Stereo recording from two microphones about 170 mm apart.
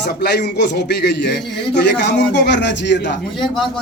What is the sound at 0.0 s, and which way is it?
A man's voice, 75° left (ahead or behind).